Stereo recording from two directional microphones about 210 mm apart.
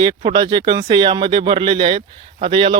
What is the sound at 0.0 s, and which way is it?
Speech, 20° right (ahead or behind).